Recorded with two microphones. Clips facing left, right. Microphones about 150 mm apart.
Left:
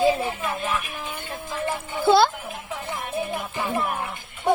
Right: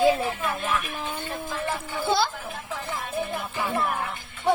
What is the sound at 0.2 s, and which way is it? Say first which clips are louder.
Music: left 1 dB; centre (ahead or behind).